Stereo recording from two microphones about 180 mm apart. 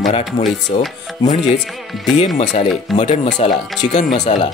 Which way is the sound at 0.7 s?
40° left (ahead or behind).